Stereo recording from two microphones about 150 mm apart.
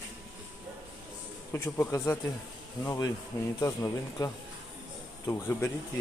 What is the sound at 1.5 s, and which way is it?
Speech, 15° left (ahead or behind).